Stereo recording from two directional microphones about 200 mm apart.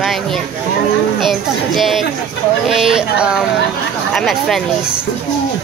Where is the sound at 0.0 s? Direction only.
Centre (ahead or behind).